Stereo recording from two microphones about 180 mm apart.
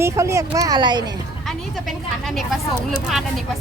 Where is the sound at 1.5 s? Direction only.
Centre (ahead or behind).